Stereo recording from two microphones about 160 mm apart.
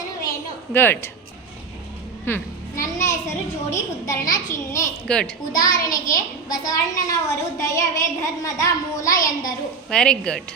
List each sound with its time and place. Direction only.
0.7 s a woman's voice: 15° left (ahead or behind)
2.2 s a woman's voice: 15° left (ahead or behind)
5.0 s a woman's voice: 5° left (ahead or behind)
5.5 s a woman's voice: 25° left (ahead or behind)
9.9 s a woman's voice: 5° left (ahead or behind)